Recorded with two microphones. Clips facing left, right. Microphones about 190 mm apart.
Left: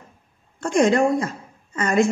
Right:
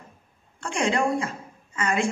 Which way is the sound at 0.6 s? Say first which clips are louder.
Left 7 dB; 40° left (ahead or behind).